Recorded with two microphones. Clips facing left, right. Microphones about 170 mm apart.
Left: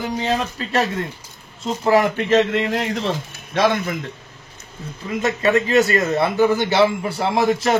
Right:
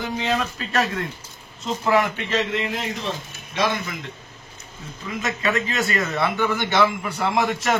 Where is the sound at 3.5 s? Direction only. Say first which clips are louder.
Left 6 dB; 60° left (ahead or behind).